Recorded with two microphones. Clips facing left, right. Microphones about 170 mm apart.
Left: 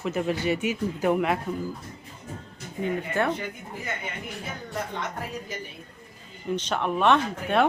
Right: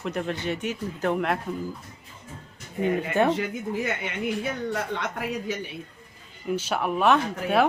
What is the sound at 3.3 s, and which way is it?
Speech, 80° right.